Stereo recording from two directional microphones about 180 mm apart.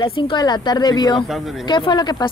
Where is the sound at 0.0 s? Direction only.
25° left (ahead or behind).